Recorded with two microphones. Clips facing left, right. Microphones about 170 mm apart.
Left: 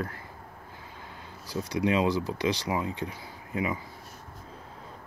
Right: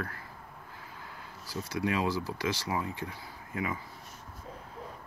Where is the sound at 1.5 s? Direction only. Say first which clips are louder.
Left 5 dB; 20° left (ahead or behind).